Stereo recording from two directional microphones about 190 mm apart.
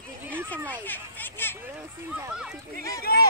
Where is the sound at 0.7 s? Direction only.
10° left (ahead or behind).